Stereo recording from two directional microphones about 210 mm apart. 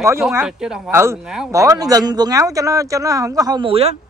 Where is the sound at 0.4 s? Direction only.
5° right (ahead or behind).